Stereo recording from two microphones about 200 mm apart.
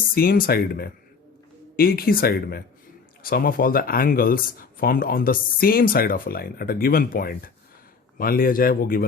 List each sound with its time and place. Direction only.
0.1 s speech: 45° left (ahead or behind)